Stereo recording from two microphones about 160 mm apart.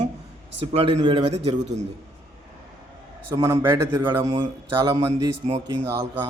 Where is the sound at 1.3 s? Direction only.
40° right (ahead or behind).